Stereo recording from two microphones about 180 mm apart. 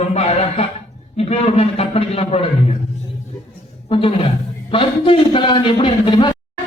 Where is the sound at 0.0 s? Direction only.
35° left (ahead or behind).